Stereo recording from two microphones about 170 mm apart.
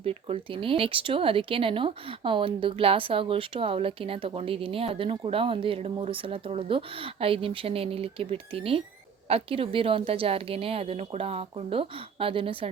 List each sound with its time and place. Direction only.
0.0 s speech: 35° right (ahead or behind)